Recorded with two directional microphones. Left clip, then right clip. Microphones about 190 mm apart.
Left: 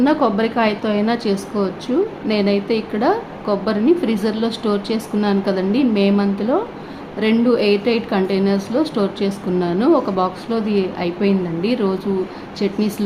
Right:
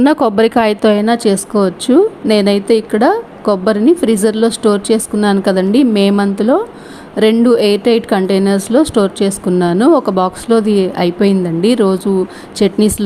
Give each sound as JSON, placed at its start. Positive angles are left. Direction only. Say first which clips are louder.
{"t": 0.0, "sound": "a woman's voice", "louder": "right 6 dB", "side_deg": -50}